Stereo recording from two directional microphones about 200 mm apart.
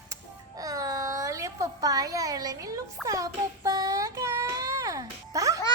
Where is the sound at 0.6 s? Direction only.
15° right (ahead or behind).